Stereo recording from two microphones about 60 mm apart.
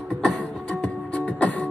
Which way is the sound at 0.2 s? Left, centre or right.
Centre.